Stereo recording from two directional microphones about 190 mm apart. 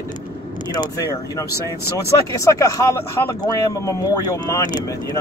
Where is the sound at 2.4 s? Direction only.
15° left (ahead or behind).